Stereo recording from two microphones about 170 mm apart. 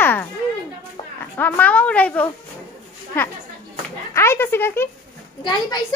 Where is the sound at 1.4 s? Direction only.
10° left (ahead or behind).